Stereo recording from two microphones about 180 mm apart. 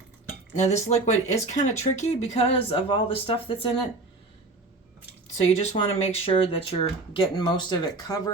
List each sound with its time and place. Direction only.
0.5 s speech: 40° left (ahead or behind)
5.5 s speech: 35° left (ahead or behind)